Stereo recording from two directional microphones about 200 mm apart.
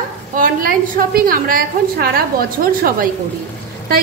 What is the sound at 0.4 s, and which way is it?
A woman's voice, 45° right (ahead or behind).